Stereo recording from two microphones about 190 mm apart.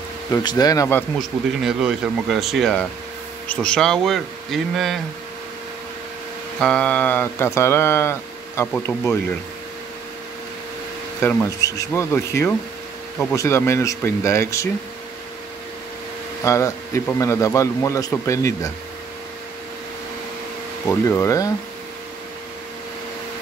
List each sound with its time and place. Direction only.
0.3 s speech: 20° left (ahead or behind)
1.6 s speech: 5° right (ahead or behind)
6.6 s speech: 5° left (ahead or behind)
11.1 s speech: 15° left (ahead or behind)
16.4 s speech: 15° left (ahead or behind)
21.1 s speech: 15° left (ahead or behind)